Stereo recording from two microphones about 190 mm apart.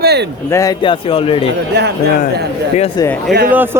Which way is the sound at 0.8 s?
30° left (ahead or behind).